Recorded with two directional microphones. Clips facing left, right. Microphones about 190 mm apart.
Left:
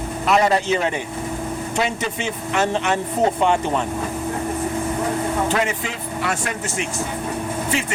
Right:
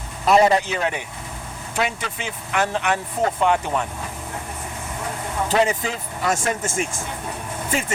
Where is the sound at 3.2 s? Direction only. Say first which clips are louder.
Left 3 dB; 25° left (ahead or behind).